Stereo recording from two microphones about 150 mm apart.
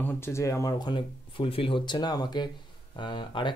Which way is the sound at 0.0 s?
15° left (ahead or behind).